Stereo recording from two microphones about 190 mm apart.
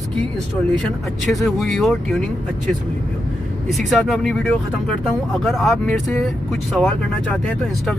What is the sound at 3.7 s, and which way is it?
Speech, centre (ahead or behind).